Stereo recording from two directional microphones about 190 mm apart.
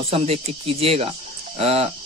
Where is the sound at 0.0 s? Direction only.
30° right (ahead or behind).